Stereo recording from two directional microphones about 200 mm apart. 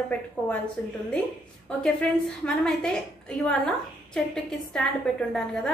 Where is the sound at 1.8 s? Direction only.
5° left (ahead or behind).